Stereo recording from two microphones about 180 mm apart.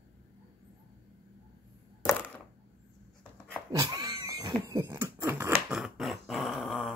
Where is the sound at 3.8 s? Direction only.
20° right (ahead or behind).